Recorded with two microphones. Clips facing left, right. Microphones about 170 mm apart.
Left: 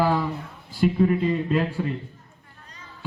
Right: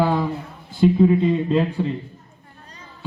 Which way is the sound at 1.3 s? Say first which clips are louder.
Right 4 dB; centre (ahead or behind).